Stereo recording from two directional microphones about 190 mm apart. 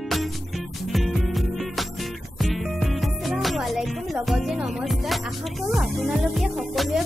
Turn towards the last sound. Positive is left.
turn(degrees=0)  # may be behind; listen again after turning